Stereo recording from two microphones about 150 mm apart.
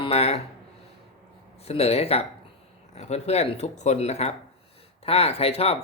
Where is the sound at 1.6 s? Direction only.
40° left (ahead or behind).